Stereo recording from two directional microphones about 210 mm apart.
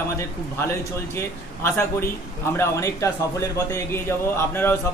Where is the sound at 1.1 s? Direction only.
10° left (ahead or behind).